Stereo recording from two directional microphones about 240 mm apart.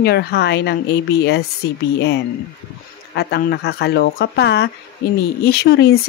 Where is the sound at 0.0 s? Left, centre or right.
Left.